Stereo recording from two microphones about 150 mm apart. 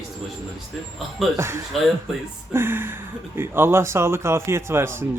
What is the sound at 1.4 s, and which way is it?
Speech, 15° right (ahead or behind).